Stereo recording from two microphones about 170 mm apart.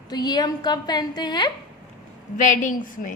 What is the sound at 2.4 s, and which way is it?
Speech, 50° left (ahead or behind).